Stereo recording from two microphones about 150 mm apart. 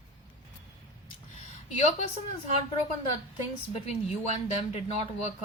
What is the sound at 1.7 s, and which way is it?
Speech, 50° left (ahead or behind).